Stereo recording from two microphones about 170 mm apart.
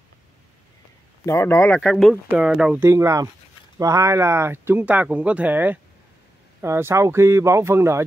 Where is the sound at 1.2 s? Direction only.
15° left (ahead or behind).